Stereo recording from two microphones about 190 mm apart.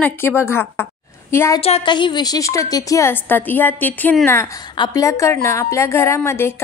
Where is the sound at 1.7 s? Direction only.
30° left (ahead or behind); by 4.4 s 10° left (ahead or behind).